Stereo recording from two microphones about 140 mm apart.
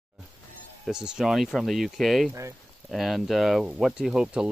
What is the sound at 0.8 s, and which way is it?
Speech, 5° right (ahead or behind).